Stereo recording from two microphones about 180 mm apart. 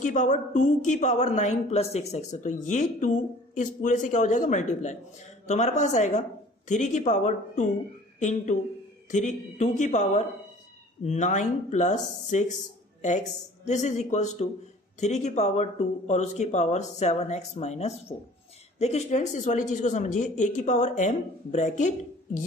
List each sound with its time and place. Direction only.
0.0 s a woman's voice: 45° left (ahead or behind)